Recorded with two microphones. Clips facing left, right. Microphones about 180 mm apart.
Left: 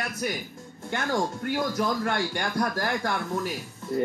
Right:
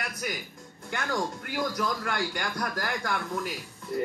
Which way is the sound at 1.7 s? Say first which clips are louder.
Left 4 dB; 30° left (ahead or behind).